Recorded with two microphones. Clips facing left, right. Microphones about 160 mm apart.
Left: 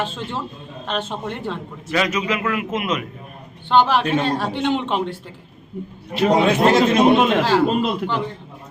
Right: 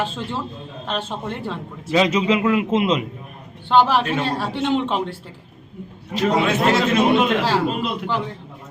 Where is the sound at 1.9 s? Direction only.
25° right (ahead or behind).